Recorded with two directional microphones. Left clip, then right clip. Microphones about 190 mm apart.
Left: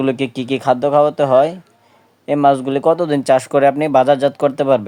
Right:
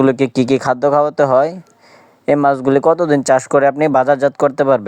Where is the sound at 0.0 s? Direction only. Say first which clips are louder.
Right 5 dB; 20° right (ahead or behind).